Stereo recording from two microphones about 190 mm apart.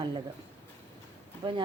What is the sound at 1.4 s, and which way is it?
Speech, 25° right (ahead or behind).